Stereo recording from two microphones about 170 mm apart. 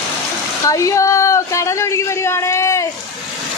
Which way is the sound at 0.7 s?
20° left (ahead or behind).